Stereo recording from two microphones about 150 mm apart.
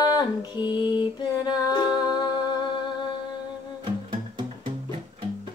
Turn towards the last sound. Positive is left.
turn(degrees=-35)  # may be behind; listen again after turning